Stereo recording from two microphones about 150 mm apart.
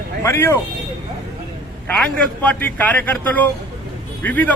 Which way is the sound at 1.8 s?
10° left (ahead or behind).